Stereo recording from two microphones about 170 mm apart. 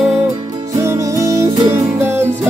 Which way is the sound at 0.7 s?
15° right (ahead or behind).